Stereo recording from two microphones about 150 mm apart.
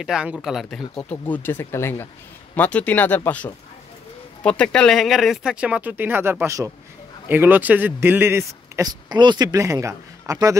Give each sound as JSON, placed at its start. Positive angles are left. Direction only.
{"t": 0.0, "sound": "speech", "side_deg": -5}
{"t": 4.4, "sound": "speech", "side_deg": 5}